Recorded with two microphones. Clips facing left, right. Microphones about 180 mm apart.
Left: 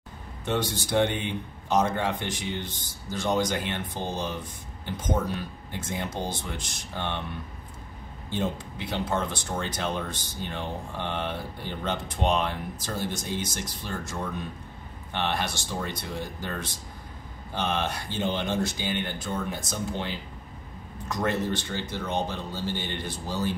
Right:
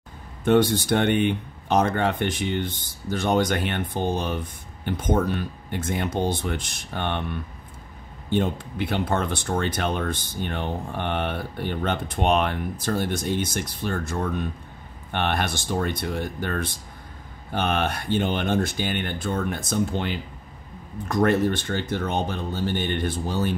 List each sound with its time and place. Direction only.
0.5 s speech: 60° right (ahead or behind)
8.3 s speech: 60° right (ahead or behind)